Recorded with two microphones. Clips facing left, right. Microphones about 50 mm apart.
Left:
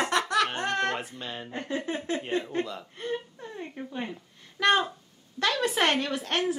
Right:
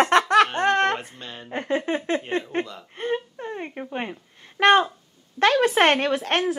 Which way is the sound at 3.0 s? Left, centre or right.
Right.